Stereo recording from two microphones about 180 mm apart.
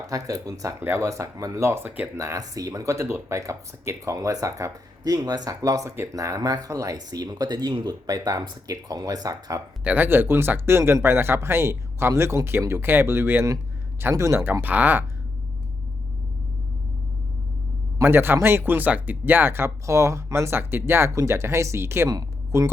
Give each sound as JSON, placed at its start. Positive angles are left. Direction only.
{"t": 0.1, "sound": "speech", "side_deg": -20}
{"t": 9.8, "sound": "speech", "side_deg": -10}
{"t": 18.0, "sound": "speech", "side_deg": -10}